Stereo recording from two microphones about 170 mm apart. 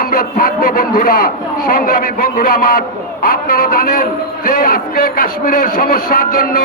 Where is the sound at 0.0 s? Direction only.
60° left (ahead or behind).